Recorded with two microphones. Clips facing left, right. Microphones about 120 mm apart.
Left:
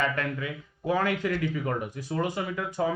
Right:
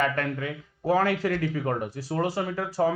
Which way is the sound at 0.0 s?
50° right (ahead or behind).